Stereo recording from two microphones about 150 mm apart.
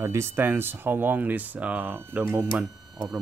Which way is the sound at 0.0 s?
20° right (ahead or behind).